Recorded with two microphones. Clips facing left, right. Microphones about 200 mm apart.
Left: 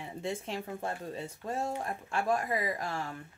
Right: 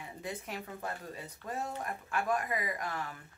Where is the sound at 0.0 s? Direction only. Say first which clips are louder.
Left 5 dB; 25° left (ahead or behind).